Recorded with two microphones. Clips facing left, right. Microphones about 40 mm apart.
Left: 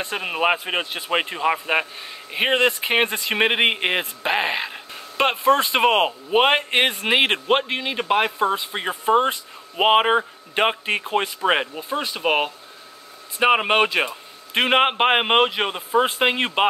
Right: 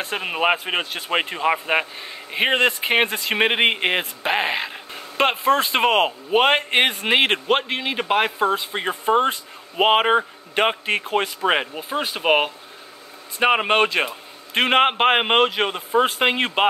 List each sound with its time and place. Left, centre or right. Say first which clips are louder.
0.0 s a man's voice: even; centre
11.7 s speech: right 1 dB; right
13.4 s a man's voice: even; centre